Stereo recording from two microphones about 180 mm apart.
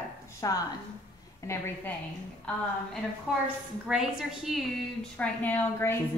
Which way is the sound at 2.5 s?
5° left (ahead or behind).